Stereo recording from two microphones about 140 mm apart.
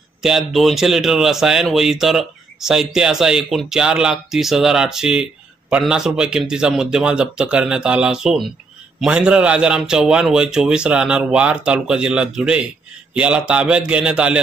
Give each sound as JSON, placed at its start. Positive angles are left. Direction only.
{"t": 0.2, "sound": "a man's voice", "side_deg": 0}